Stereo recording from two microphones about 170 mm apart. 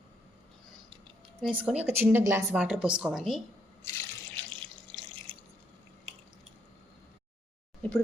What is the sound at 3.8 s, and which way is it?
Water, 15° left (ahead or behind).